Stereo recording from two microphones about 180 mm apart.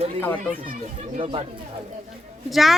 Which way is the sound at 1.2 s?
30° right (ahead or behind).